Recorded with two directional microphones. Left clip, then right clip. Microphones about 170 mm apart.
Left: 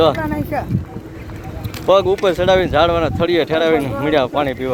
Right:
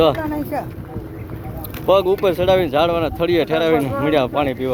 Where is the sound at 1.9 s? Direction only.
Centre (ahead or behind).